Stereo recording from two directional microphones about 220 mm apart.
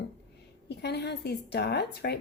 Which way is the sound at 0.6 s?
50° left (ahead or behind).